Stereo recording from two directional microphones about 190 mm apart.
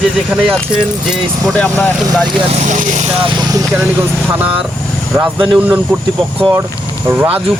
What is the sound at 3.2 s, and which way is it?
Speech, 20° right (ahead or behind).